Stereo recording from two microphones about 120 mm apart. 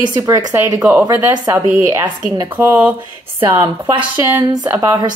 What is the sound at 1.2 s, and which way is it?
Speech, 30° right (ahead or behind).